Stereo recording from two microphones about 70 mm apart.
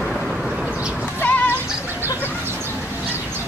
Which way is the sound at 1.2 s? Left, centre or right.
Centre.